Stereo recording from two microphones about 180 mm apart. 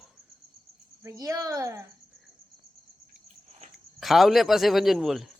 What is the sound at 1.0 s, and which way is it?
Speech, 20° right (ahead or behind).